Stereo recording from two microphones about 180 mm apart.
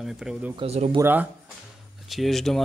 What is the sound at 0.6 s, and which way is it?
Speech, 35° right (ahead or behind).